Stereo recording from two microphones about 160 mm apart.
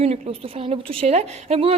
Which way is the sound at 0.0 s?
40° right (ahead or behind).